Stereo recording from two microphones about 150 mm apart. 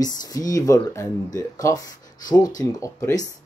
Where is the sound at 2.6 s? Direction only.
20° left (ahead or behind).